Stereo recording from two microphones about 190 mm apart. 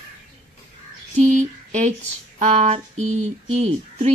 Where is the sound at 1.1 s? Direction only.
40° right (ahead or behind).